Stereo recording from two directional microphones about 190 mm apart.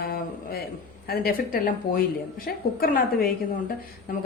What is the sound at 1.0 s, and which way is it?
A woman's voice, 55° left (ahead or behind).